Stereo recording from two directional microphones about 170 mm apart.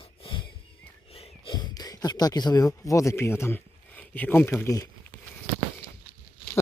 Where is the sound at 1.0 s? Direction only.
35° left (ahead or behind); by 4.9 s 15° left (ahead or behind).